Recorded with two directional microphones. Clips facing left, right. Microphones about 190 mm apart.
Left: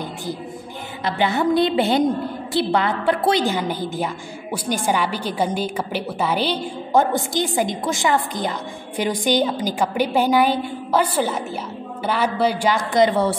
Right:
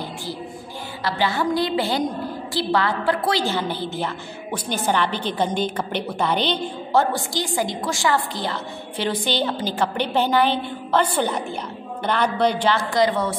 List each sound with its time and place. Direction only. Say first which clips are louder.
1.0 s a woman's voice: left 3 dB; 20° left (ahead or behind)